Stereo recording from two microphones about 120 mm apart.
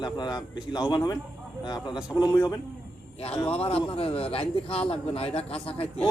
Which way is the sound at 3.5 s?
55° left (ahead or behind).